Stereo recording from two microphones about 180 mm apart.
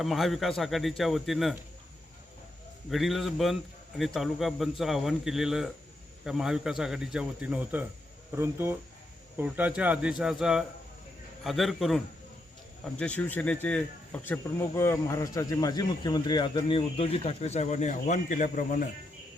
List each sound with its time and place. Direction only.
0.0 s a man's voice: centre (ahead or behind)
2.9 s a man's voice: centre (ahead or behind); by 18.9 s 45° left (ahead or behind)